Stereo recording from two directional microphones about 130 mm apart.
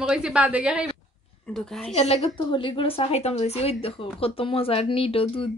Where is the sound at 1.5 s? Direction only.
Centre (ahead or behind).